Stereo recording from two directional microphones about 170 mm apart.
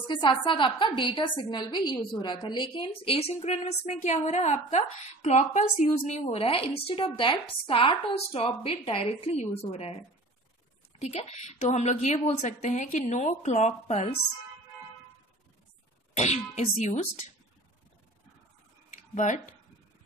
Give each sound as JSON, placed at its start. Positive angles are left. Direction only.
{"t": 0.1, "sound": "a woman's voice", "side_deg": 25}
{"t": 11.0, "sound": "a woman's voice", "side_deg": 40}
{"t": 16.2, "sound": "a woman's voice", "side_deg": 40}
{"t": 19.1, "sound": "a woman's voice", "side_deg": 45}